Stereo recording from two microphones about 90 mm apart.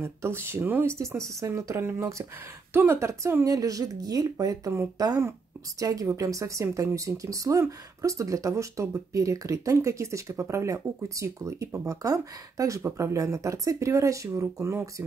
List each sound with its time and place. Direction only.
0.0 s speech: 25° right (ahead or behind)
0.9 s speech: 35° right (ahead or behind)
3.4 s speech: 40° right (ahead or behind)